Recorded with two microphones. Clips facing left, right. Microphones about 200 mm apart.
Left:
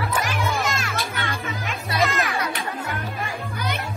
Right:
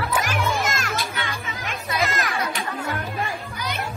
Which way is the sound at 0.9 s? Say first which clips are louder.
Even; 55° left (ahead or behind).